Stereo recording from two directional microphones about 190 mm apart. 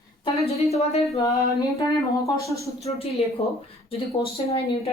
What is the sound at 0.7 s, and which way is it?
Speech, 35° left (ahead or behind).